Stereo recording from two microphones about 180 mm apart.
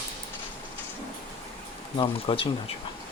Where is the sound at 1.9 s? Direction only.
30° left (ahead or behind).